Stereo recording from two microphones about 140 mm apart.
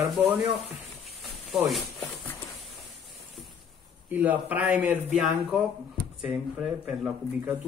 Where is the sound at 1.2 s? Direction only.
Centre (ahead or behind).